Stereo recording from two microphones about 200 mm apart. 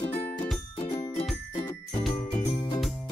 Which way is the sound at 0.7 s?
20° left (ahead or behind).